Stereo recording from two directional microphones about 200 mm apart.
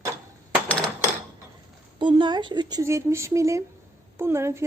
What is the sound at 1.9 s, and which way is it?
Speech, 25° right (ahead or behind).